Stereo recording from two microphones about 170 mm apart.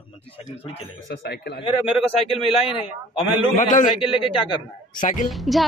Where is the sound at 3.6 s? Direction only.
50° left (ahead or behind).